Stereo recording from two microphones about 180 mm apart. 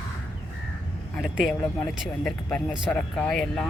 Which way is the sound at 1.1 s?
5° right (ahead or behind).